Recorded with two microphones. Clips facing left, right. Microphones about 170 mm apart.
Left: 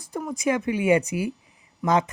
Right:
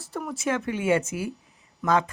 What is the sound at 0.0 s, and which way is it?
Speech, 15° left (ahead or behind).